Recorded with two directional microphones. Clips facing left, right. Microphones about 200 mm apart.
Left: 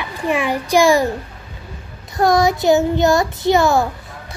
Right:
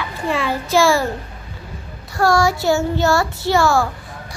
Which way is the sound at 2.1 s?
20° left (ahead or behind).